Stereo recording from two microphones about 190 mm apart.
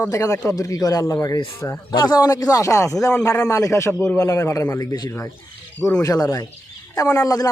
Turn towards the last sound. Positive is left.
turn(degrees=20)  # may be behind; listen again after turning